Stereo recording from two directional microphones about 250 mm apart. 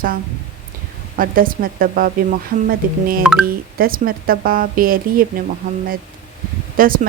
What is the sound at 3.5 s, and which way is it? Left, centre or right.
Speech, right.